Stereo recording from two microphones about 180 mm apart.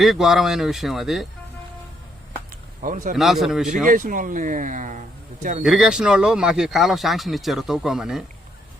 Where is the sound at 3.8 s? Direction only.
50° right (ahead or behind).